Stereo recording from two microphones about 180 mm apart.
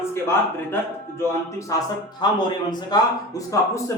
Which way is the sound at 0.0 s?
15° left (ahead or behind).